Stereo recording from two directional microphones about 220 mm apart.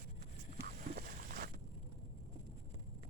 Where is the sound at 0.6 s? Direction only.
40° right (ahead or behind).